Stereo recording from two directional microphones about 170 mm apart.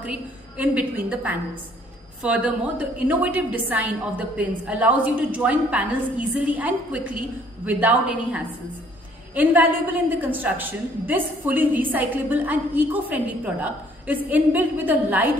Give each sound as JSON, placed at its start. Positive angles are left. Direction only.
{"t": 0.0, "sound": "a woman's voice", "side_deg": -5}